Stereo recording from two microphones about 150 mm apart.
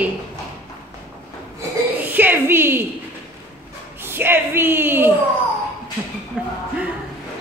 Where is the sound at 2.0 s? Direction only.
10° right (ahead or behind).